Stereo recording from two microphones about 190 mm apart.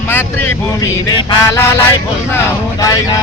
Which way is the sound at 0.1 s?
10° left (ahead or behind).